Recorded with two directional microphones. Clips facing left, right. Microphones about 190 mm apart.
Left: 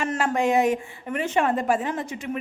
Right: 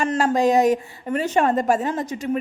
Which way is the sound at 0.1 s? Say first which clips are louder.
Right 4 dB; 35° right (ahead or behind).